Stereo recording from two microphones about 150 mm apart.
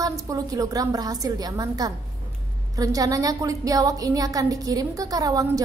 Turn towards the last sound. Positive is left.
turn(degrees=-25)  # may be behind; listen again after turning